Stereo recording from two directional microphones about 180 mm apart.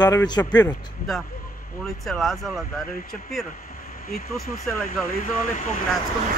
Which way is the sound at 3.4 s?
50° left (ahead or behind).